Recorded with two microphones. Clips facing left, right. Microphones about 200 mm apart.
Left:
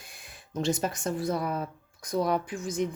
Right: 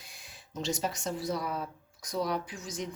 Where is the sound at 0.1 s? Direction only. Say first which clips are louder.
Left 6 dB; 55° left (ahead or behind).